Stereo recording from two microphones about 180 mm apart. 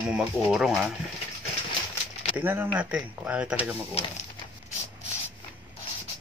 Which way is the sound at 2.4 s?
10° right (ahead or behind).